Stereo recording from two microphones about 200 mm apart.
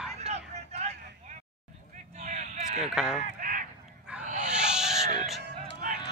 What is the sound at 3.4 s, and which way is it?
Honk, 45° right (ahead or behind).